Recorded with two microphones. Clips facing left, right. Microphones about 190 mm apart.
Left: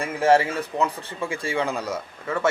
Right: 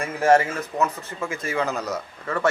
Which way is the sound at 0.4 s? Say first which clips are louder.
Even; 30° left (ahead or behind).